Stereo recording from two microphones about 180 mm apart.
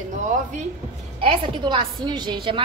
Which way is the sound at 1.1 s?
25° right (ahead or behind).